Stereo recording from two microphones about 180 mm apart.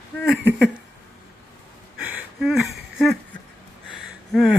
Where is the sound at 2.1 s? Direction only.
Centre (ahead or behind).